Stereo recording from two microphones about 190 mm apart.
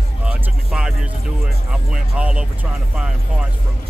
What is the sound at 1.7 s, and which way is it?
Speech, 5° right (ahead or behind).